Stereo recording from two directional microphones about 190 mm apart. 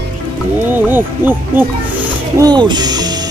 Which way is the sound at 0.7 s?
10° right (ahead or behind).